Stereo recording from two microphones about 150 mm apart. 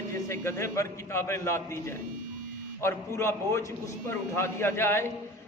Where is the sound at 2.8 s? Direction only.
15° left (ahead or behind).